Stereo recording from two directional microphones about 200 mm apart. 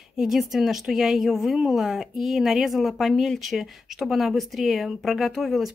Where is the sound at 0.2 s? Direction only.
Centre (ahead or behind).